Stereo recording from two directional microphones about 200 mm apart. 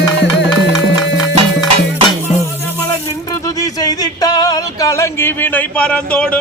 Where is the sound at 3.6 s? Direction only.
20° left (ahead or behind).